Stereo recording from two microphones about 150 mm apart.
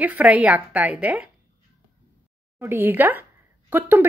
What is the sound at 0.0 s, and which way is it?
Speech, 10° right (ahead or behind).